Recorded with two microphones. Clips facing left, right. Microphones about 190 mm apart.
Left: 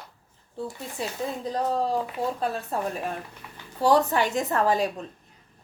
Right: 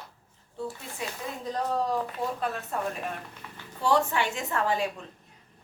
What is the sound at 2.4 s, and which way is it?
Speech, 35° left (ahead or behind).